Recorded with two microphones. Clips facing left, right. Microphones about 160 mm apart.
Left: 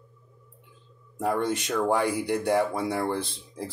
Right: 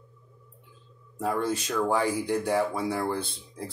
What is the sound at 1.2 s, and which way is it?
Speech, 20° left (ahead or behind).